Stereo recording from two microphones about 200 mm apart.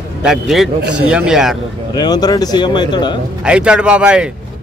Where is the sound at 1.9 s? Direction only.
20° left (ahead or behind).